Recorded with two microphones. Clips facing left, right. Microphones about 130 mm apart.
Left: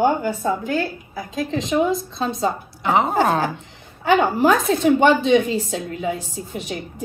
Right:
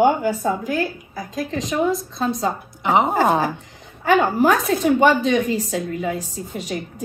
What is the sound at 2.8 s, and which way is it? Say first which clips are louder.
Speech: right 1 dB; 20° right (ahead or behind).